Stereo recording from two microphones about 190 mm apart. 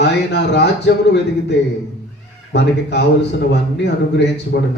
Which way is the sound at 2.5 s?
65° left (ahead or behind).